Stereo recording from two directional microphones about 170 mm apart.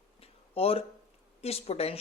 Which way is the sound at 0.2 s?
35° left (ahead or behind).